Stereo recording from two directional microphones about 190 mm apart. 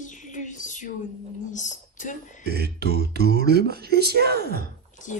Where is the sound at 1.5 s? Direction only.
40° left (ahead or behind).